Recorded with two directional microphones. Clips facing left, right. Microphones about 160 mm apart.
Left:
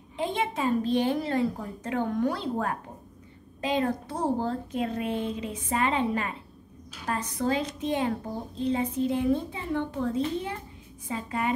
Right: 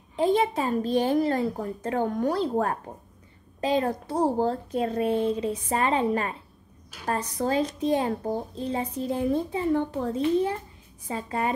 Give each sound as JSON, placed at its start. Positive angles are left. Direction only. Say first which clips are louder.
{"t": 0.1, "sound": "a child's voice", "louder": "right 7 dB", "side_deg": -40}